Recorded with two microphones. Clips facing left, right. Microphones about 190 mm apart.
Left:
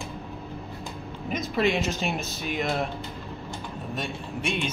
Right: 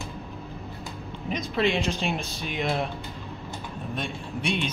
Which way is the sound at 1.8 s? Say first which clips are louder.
Even; 45° left (ahead or behind).